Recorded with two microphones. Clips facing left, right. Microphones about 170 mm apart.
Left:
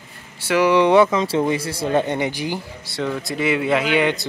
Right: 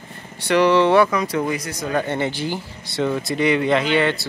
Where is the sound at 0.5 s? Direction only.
10° left (ahead or behind).